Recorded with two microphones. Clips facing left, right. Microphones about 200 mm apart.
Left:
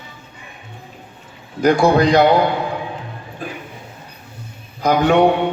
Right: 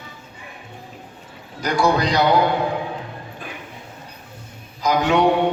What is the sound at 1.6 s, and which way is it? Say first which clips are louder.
Speech: left 6 dB; 55° left (ahead or behind).